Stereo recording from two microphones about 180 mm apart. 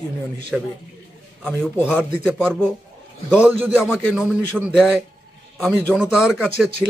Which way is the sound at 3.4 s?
10° right (ahead or behind).